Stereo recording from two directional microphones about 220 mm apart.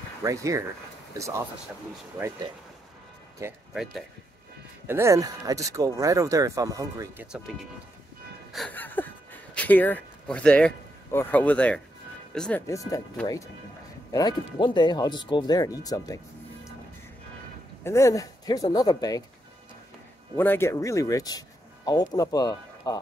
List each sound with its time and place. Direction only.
0.2 s speech: 15° right (ahead or behind)
3.4 s speech: 15° right (ahead or behind)
3.7 s speech: centre (ahead or behind)
8.5 s speech: 5° left (ahead or behind)
17.8 s speech: 15° left (ahead or behind)
20.3 s speech: 10° left (ahead or behind)